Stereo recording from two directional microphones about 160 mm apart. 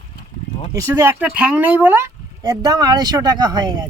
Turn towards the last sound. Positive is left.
turn(degrees=-25)  # may be behind; listen again after turning